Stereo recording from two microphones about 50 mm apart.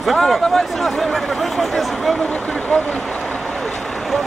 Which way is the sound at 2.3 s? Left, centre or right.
Left.